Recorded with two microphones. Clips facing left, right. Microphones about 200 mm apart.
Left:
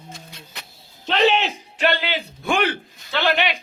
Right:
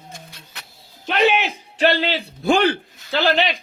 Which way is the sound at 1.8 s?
35° right (ahead or behind).